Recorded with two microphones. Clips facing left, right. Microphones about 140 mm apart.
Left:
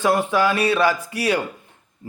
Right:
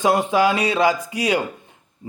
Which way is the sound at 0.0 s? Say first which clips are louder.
Right 1 dB; 20° right (ahead or behind).